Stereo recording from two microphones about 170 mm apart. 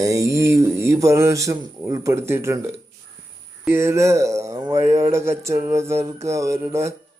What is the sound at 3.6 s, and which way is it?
Speech, 15° right (ahead or behind).